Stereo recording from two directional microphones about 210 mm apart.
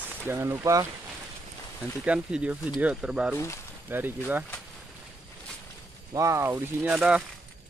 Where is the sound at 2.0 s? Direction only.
5° right (ahead or behind).